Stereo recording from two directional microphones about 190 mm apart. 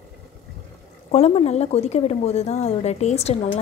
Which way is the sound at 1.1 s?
35° left (ahead or behind).